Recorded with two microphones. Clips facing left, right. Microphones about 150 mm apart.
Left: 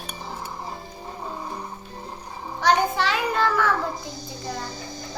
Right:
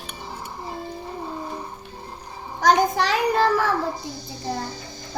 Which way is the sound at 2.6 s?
40° right (ahead or behind).